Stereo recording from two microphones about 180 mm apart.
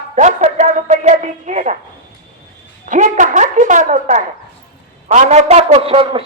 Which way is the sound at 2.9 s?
45° right (ahead or behind).